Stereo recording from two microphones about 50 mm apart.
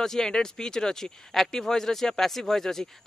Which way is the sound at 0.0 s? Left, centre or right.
Centre.